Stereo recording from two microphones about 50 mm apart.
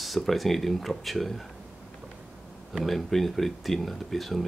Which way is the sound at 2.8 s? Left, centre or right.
Centre.